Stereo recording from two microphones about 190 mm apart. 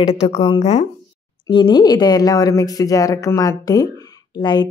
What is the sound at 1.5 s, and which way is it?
Speech, 25° left (ahead or behind).